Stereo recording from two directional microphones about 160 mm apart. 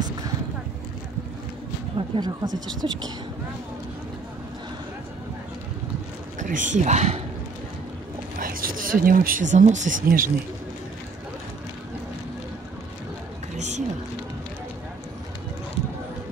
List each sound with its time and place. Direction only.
2.0 s speech: 30° right (ahead or behind)
6.4 s speech: 50° right (ahead or behind)
8.4 s speech: 65° right (ahead or behind)
13.6 s a sound: 45° right (ahead or behind)